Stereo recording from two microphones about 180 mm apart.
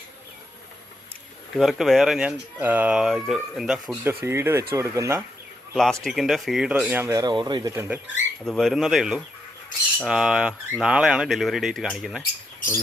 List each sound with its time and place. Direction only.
1.5 s speech: centre (ahead or behind)
4.0 s speech: 15° right (ahead or behind)
5.7 s speech: 5° left (ahead or behind); by 7.9 s 15° right (ahead or behind)
8.4 s speech: centre (ahead or behind)
12.5 s squawk: 50° left (ahead or behind)